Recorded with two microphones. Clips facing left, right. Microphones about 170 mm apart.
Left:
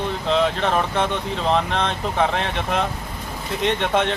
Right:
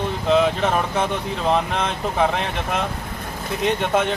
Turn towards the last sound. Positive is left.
turn(degrees=0)  # may be behind; listen again after turning